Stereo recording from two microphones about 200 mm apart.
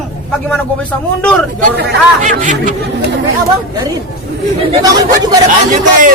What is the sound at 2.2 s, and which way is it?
Speech, 40° right (ahead or behind).